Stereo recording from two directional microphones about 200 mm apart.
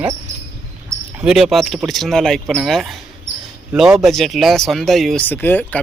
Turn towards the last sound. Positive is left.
turn(degrees=10)  # may be behind; listen again after turning